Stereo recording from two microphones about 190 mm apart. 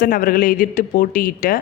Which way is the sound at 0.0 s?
50° left (ahead or behind).